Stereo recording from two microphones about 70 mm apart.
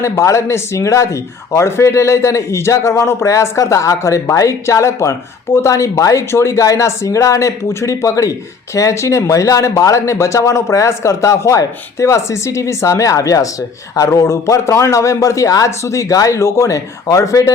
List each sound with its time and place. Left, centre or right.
0.0 s speech: left